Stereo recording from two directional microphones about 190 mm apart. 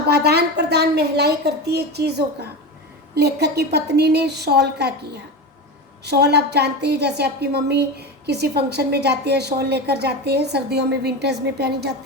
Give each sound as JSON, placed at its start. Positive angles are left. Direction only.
{"t": 0.1, "sound": "a woman's voice", "side_deg": -60}